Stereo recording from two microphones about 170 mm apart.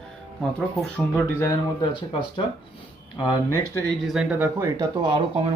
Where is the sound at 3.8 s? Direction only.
Centre (ahead or behind).